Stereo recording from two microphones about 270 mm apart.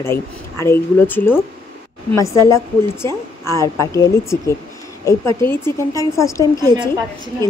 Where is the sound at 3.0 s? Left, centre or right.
Centre.